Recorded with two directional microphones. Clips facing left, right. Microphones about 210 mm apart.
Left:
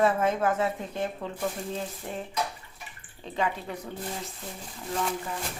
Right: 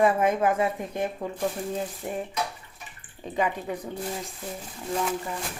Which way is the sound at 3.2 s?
15° right (ahead or behind).